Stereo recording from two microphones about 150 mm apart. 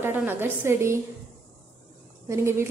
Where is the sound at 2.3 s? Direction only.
20° right (ahead or behind).